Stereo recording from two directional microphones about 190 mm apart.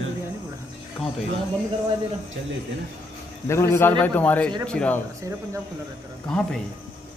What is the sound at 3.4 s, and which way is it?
A man's voice, 15° left (ahead or behind).